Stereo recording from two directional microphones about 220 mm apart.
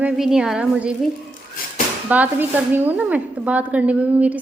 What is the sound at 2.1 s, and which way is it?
Speech, 5° right (ahead or behind).